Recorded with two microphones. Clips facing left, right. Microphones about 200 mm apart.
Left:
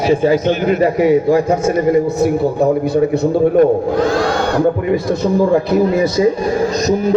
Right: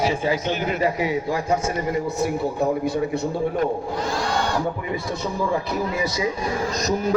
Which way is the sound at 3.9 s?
80° left.